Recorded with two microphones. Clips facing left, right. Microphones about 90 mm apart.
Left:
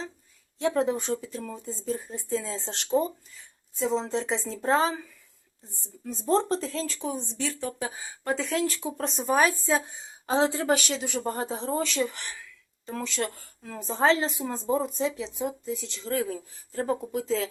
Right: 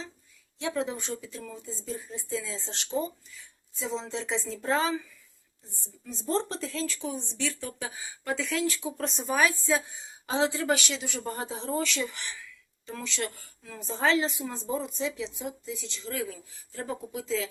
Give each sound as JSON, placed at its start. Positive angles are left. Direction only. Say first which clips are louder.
{"t": 0.6, "sound": "speech", "louder": "left 6 dB", "side_deg": 45}
{"t": 4.0, "sound": "speech", "louder": "left 4 dB", "side_deg": 40}
{"t": 6.2, "sound": "speech", "louder": "left 5 dB", "side_deg": 40}